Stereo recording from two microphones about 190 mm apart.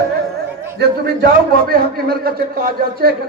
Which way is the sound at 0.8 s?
55° right (ahead or behind).